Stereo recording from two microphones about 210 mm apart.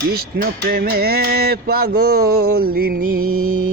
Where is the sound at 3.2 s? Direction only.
90° right.